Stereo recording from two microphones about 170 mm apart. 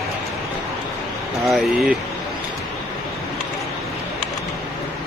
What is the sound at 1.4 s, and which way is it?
Speech, centre (ahead or behind).